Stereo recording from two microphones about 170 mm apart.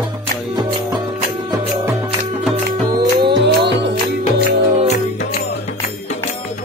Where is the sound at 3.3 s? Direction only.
90° right.